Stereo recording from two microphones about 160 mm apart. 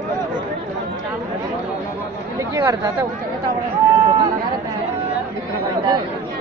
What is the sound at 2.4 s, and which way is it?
Chatter, 20° right (ahead or behind).